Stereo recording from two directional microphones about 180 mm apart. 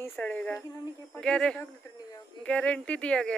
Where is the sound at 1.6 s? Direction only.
20° left (ahead or behind).